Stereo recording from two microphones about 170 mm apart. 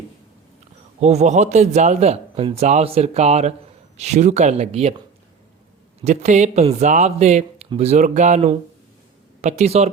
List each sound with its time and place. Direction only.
0.9 s a man's voice: 40° right (ahead or behind)
6.0 s a man's voice: 40° right (ahead or behind)